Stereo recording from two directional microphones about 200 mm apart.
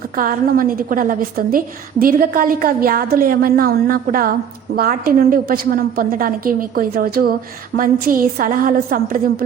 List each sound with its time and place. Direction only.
0.2 s a woman's voice: 45° right (ahead or behind)